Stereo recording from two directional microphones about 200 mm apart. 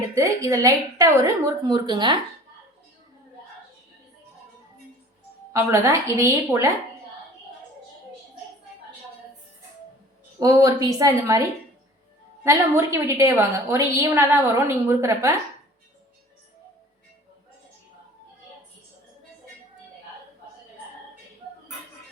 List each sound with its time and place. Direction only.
0.1 s a woman's voice: 15° right (ahead or behind)
5.5 s a woman's voice: 15° right (ahead or behind)
10.4 s a woman's voice: 15° right (ahead or behind)